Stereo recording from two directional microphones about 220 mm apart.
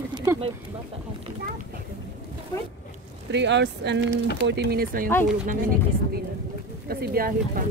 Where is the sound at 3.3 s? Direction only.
55° right (ahead or behind).